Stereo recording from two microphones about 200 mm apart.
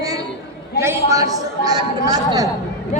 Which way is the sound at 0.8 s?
10° right (ahead or behind).